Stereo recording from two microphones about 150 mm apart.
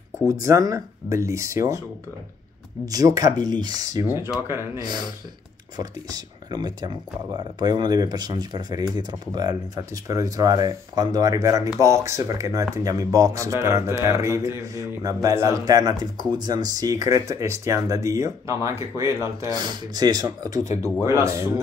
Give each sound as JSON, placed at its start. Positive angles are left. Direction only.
{"t": 0.3, "sound": "speech", "side_deg": -25}
{"t": 2.8, "sound": "speech", "side_deg": -25}